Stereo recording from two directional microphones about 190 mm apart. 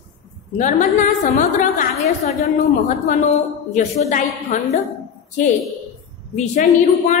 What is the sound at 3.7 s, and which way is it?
Speech, 40° left (ahead or behind).